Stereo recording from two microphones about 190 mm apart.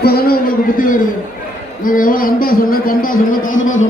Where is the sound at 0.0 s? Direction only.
55° left (ahead or behind).